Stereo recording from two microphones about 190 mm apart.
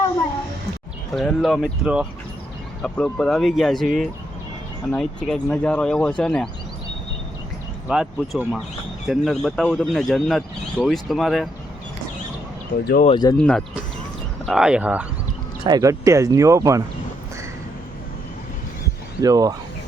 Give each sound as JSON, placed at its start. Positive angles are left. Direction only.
{"t": 1.1, "sound": "speech", "side_deg": 0}
{"t": 7.9, "sound": "speech", "side_deg": -5}
{"t": 12.8, "sound": "speech", "side_deg": 55}
{"t": 13.1, "sound": "speech", "side_deg": 20}
{"t": 13.3, "sound": "speech", "side_deg": 5}
{"t": 15.6, "sound": "speech", "side_deg": -20}
{"t": 19.2, "sound": "speech", "side_deg": -20}